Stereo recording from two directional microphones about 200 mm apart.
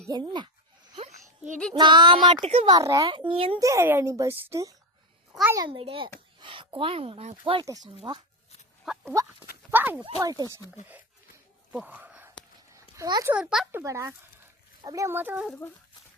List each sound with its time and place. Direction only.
0.1 s a child's voice: 20° right (ahead or behind)
1.5 s speech: 5° left (ahead or behind)
1.8 s a child's voice: 25° right (ahead or behind)
2.7 s a child's voice: 20° right (ahead or behind)
3.6 s a child's voice: 15° right (ahead or behind)
5.5 s a child's voice: 25° right (ahead or behind)
7.6 s a child's voice: 15° right (ahead or behind)
8.8 s fowl: centre (ahead or behind)
9.7 s speech: 10° right (ahead or behind)
11.7 s whispering: 5° right (ahead or behind)
12.7 s a sound: 15° right (ahead or behind)
13.3 s speech: 5° right (ahead or behind)